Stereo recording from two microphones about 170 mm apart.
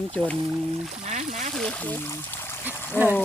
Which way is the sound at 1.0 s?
45° right (ahead or behind).